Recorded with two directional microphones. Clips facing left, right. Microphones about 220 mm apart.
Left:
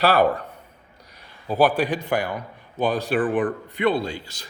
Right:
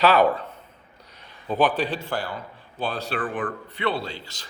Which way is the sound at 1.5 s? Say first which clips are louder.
Left 3 dB; 10° left (ahead or behind).